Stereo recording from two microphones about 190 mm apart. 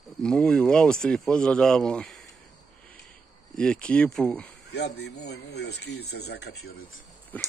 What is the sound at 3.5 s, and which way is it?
Speech, 5° left (ahead or behind).